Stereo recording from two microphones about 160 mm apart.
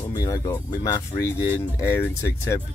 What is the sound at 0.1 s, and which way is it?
Speech, 25° left (ahead or behind).